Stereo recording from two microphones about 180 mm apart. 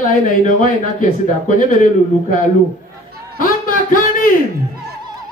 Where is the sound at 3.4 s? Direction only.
50° left (ahead or behind).